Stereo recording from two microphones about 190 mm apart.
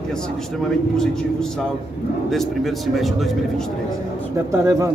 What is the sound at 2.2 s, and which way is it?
Speech, centre (ahead or behind).